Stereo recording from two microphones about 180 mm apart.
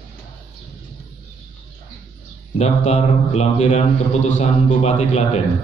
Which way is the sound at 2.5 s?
35° left (ahead or behind).